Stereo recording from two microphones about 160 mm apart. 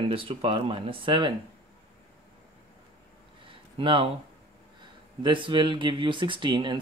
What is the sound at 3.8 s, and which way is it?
Speech, 30° right (ahead or behind).